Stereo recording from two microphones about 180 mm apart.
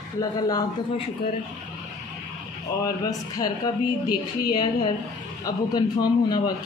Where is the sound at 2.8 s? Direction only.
20° left (ahead or behind).